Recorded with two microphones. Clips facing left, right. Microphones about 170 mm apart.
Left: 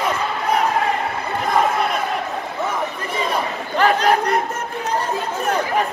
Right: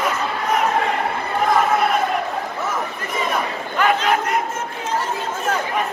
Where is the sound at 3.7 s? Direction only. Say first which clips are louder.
Left 2 dB; 35° left (ahead or behind).